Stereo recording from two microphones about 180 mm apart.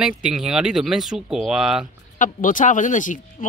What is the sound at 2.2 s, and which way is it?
Speech, 45° left (ahead or behind).